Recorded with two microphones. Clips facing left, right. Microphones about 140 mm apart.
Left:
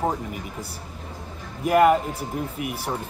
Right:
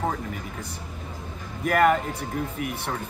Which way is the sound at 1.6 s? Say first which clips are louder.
Left 3 dB; 5° left (ahead or behind).